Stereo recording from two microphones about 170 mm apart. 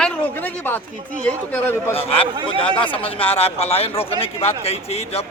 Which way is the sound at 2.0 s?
35° left (ahead or behind).